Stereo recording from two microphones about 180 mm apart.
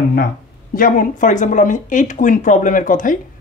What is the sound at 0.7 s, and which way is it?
Speech, 50° left (ahead or behind).